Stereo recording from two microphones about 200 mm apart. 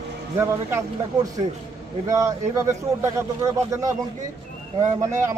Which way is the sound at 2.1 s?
15° right (ahead or behind).